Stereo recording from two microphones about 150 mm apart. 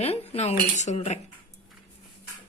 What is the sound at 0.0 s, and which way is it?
Speech, 40° left (ahead or behind).